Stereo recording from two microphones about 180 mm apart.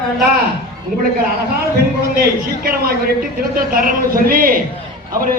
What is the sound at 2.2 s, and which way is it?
A man's voice, 55° right (ahead or behind).